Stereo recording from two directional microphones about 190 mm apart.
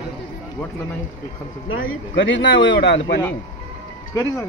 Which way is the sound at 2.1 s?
75° left (ahead or behind).